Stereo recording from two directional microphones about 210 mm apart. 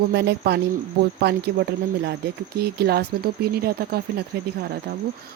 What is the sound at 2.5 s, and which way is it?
Speech, 50° right (ahead or behind).